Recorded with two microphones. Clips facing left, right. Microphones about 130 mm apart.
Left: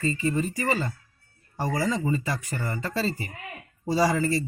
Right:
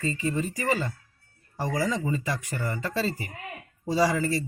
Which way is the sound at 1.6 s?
5° left (ahead or behind).